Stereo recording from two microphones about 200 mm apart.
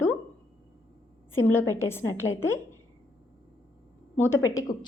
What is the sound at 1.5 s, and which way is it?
A woman's voice, 10° left (ahead or behind).